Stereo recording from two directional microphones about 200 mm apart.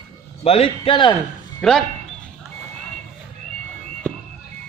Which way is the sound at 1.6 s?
5° left (ahead or behind).